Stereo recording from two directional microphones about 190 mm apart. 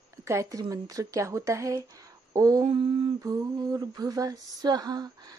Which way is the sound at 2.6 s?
25° right (ahead or behind).